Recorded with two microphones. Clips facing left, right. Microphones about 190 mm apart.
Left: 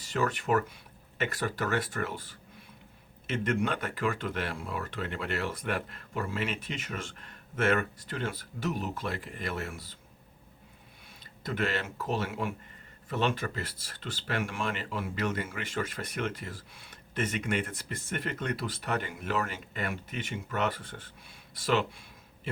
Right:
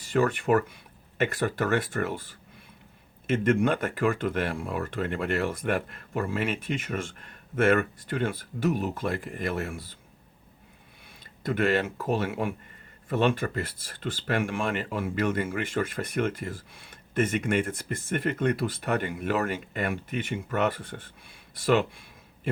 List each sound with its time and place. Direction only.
0.0 s speech: 50° right (ahead or behind)
11.4 s speech: 55° right (ahead or behind)